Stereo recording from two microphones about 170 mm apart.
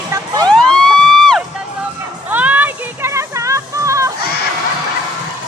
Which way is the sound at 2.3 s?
10° right (ahead or behind).